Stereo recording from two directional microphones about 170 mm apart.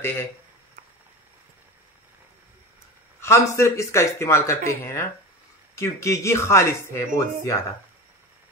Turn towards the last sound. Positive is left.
turn(degrees=15)  # may be behind; listen again after turning